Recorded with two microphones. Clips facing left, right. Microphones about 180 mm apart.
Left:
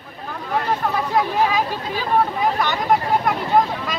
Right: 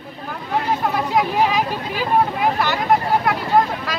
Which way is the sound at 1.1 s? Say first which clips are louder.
Right 1 dB; 15° right (ahead or behind).